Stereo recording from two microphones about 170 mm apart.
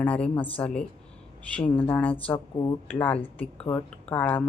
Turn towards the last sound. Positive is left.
turn(degrees=10)  # may be behind; listen again after turning